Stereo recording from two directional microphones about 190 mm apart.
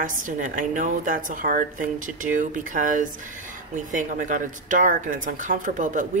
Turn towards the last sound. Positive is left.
turn(degrees=-40)  # may be behind; listen again after turning